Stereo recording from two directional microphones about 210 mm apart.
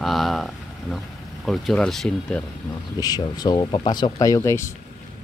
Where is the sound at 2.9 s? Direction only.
20° left (ahead or behind).